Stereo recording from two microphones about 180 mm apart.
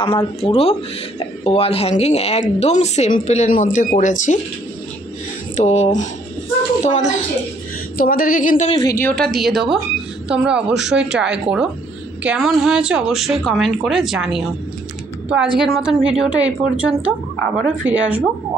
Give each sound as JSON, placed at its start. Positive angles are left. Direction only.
{"t": 0.0, "sound": "a woman's voice", "side_deg": 30}
{"t": 5.6, "sound": "a woman's voice", "side_deg": 40}
{"t": 8.0, "sound": "a woman's voice", "side_deg": 55}
{"t": 8.7, "sound": "a woman's voice", "side_deg": 15}
{"t": 15.6, "sound": "a woman's voice", "side_deg": 0}